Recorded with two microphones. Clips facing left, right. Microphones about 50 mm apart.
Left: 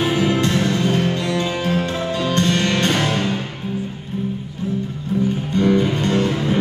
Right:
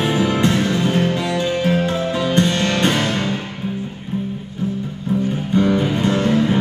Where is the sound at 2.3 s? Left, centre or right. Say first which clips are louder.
Even; centre.